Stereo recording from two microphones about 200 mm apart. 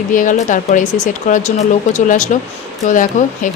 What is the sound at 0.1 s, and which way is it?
Speech, 40° left (ahead or behind).